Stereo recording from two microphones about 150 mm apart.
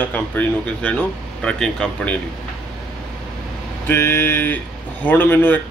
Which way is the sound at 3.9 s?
15° left (ahead or behind).